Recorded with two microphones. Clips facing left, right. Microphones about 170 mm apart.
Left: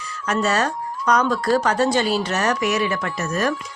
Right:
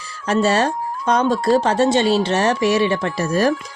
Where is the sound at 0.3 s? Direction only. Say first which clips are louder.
Right 4 dB; 30° right (ahead or behind).